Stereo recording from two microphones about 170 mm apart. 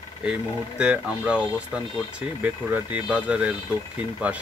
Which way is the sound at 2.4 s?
10° right (ahead or behind).